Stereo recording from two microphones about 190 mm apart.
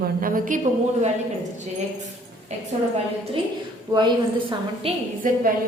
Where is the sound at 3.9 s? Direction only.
25° right (ahead or behind).